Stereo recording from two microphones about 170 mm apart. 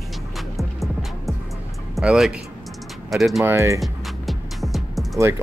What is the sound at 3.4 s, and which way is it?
Speech, 15° right (ahead or behind).